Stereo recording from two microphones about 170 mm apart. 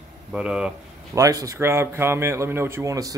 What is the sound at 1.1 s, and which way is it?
Speech, 20° right (ahead or behind).